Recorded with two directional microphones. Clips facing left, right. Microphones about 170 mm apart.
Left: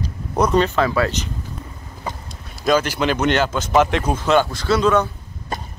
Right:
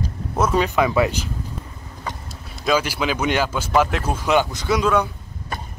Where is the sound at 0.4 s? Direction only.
5° right (ahead or behind).